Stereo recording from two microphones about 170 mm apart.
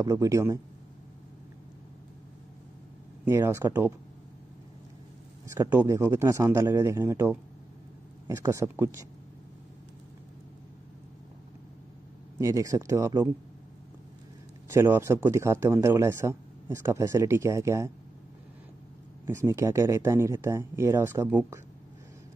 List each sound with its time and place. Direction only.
0.0 s speech: 20° right (ahead or behind)
3.3 s speech: 15° right (ahead or behind)
5.5 s speech: 15° right (ahead or behind)
12.4 s speech: 20° right (ahead or behind)
14.7 s speech: 15° right (ahead or behind)
19.2 s speech: 15° right (ahead or behind)